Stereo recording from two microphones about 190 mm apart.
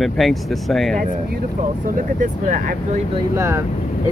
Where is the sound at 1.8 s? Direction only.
45° right (ahead or behind).